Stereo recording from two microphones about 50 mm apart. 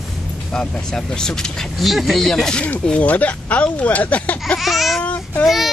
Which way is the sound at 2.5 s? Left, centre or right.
Left.